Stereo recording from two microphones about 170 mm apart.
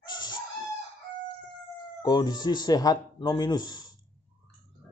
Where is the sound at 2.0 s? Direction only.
25° left (ahead or behind).